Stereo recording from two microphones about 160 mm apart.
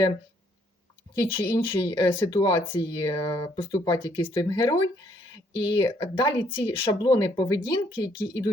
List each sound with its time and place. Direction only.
1.1 s speech: 25° left (ahead or behind)